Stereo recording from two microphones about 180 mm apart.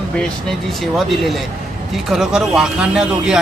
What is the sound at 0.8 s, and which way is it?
A man's voice, centre (ahead or behind).